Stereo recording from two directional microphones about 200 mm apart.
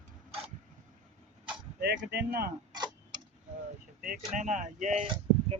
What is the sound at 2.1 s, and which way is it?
Speech, 50° right (ahead or behind).